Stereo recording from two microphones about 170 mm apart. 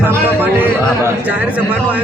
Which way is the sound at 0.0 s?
10° right (ahead or behind).